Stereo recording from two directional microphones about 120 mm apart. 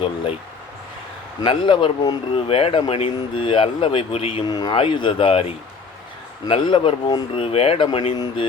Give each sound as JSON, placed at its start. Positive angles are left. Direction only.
{"t": 1.4, "sound": "speech", "side_deg": 45}
{"t": 2.5, "sound": "speech", "side_deg": 50}
{"t": 4.4, "sound": "speech", "side_deg": 35}